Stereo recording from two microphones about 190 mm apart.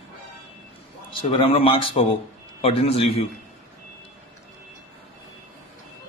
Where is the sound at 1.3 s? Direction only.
30° left (ahead or behind).